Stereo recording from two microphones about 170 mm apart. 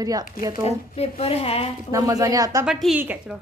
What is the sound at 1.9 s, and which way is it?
Speech, 20° right (ahead or behind).